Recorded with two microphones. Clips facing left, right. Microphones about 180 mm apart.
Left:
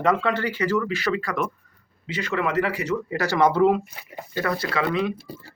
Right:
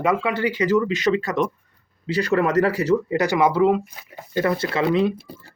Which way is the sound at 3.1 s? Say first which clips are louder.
Right 4 dB; 20° right (ahead or behind).